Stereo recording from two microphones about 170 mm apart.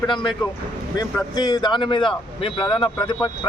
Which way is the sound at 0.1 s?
30° left (ahead or behind).